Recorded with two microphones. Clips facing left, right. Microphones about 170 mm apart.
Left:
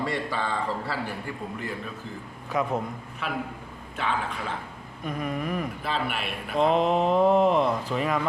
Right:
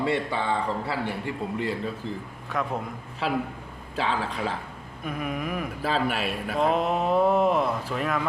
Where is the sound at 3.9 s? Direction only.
35° right (ahead or behind).